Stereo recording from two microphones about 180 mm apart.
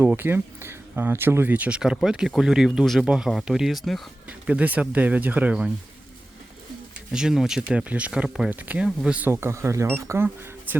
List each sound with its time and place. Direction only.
0.0 s speech: 10° right (ahead or behind)
7.1 s speech: 5° right (ahead or behind)